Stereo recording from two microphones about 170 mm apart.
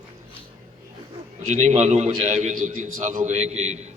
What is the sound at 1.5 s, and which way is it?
A man's voice, 45° right (ahead or behind).